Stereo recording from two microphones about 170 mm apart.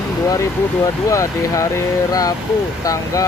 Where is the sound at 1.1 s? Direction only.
20° left (ahead or behind).